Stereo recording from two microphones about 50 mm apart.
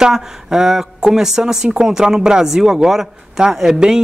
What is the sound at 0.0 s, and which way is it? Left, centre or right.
Speech, centre.